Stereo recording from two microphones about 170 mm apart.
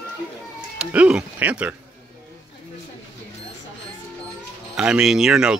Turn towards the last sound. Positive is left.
turn(degrees=-5)  # may be behind; listen again after turning